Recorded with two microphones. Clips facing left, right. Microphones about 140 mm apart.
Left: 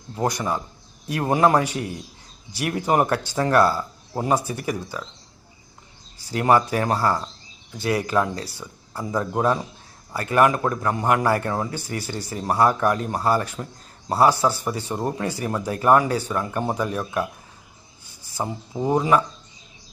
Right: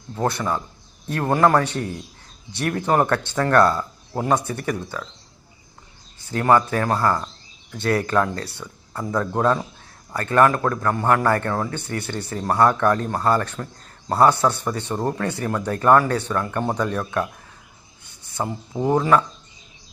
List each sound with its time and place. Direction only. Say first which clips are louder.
0.2 s a man's voice: right 1 dB; 15° left (ahead or behind)
6.3 s speech: right 1 dB; 20° left (ahead or behind)
6.9 s speech: right 2 dB; 30° left (ahead or behind)
7.8 s speech: right 2 dB; 60° right (ahead or behind)
8.0 s a man's voice: even; 15° left (ahead or behind)
8.4 s speech: right 1 dB; 65° right (ahead or behind)
8.6 s a man's voice: right 1 dB; 10° left (ahead or behind)
12.0 s speech: right 2 dB; 65° right (ahead or behind)
12.4 s a man's voice: right 1 dB; 10° left (ahead or behind)
18.2 s a sound: right 1 dB; 35° left (ahead or behind)
18.9 s a man's voice: right 1 dB; 15° left (ahead or behind)